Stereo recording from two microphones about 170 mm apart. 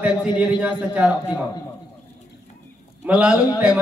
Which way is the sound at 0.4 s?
10° right (ahead or behind).